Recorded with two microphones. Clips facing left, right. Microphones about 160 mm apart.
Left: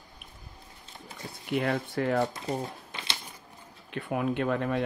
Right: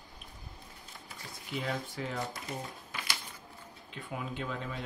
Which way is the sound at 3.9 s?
60° left (ahead or behind).